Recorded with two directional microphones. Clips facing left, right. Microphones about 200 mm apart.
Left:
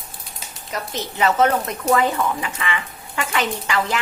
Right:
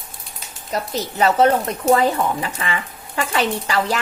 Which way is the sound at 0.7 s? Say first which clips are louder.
Right 4 dB; 35° right (ahead or behind).